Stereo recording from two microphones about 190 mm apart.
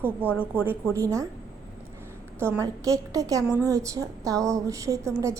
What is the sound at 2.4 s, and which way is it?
A woman's voice, 15° right (ahead or behind).